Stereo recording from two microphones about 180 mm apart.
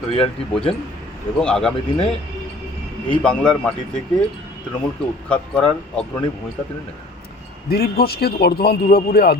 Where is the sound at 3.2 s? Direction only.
5° left (ahead or behind).